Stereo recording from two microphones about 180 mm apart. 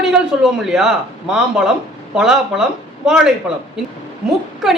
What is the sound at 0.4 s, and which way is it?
A man's voice, centre (ahead or behind).